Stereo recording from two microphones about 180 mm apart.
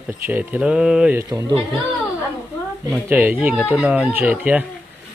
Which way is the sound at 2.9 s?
10° right (ahead or behind).